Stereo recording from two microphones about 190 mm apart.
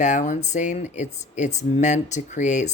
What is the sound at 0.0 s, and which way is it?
Speech, 40° left (ahead or behind).